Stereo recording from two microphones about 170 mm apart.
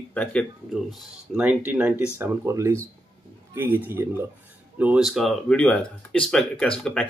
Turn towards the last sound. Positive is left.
turn(degrees=5)  # may be behind; listen again after turning